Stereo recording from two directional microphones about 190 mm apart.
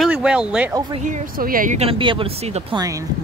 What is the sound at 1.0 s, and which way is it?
Speech, 50° right (ahead or behind).